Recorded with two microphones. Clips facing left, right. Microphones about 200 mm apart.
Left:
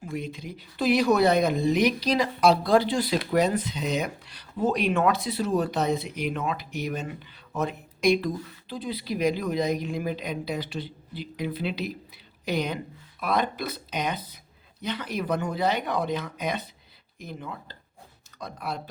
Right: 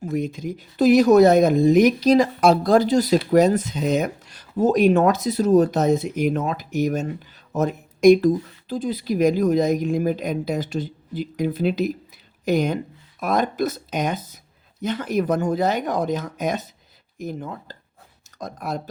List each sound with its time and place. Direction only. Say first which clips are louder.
0.0 s speech: right 8 dB; 45° right (ahead or behind)